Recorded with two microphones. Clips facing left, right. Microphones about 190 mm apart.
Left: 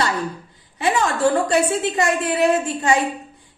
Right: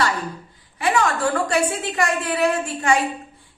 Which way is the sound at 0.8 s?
25° left (ahead or behind).